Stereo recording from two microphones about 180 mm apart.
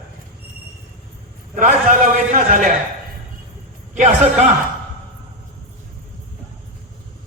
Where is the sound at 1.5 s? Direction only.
45° right (ahead or behind).